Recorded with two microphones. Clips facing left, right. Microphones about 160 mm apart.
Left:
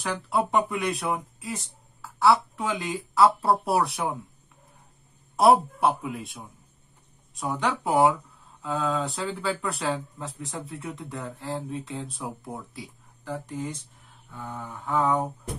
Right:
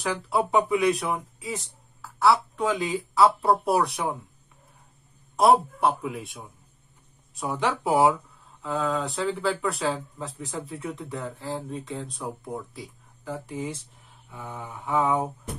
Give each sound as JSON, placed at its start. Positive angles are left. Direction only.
{"t": 0.0, "sound": "speech", "side_deg": 0}
{"t": 5.3, "sound": "speech", "side_deg": 0}
{"t": 14.3, "sound": "mantra", "side_deg": -5}